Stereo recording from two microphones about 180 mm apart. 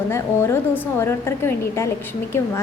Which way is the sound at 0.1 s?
15° left (ahead or behind).